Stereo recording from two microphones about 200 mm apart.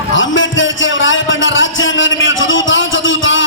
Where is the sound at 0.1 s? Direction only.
70° left (ahead or behind).